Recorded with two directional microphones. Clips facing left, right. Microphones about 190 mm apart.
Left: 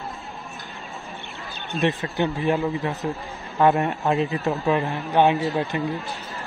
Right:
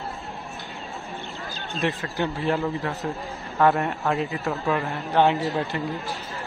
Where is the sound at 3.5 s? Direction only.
20° left (ahead or behind).